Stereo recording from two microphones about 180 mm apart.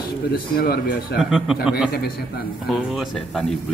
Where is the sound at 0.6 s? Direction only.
55° left (ahead or behind).